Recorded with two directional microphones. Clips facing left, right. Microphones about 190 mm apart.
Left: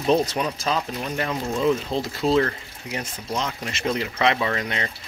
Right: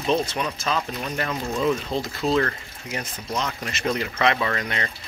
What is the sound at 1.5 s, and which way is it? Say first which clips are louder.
Speech: left 1 dB; centre (ahead or behind).